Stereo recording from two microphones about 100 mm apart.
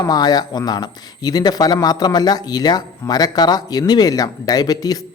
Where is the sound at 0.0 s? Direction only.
40° left (ahead or behind).